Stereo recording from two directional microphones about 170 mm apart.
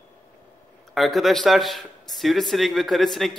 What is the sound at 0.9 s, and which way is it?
A man's voice, centre (ahead or behind).